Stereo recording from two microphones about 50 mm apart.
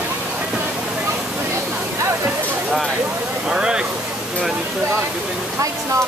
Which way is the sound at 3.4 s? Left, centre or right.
Centre.